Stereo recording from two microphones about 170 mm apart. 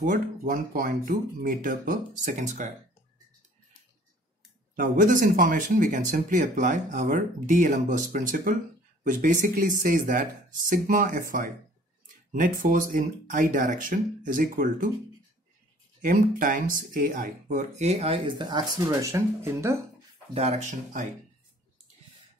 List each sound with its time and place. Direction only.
0.0 s speech: 55° right (ahead or behind)
4.7 s speech: 55° right (ahead or behind)
16.0 s speech: 55° right (ahead or behind); by 19.8 s 15° right (ahead or behind)
20.3 s speech: 40° right (ahead or behind)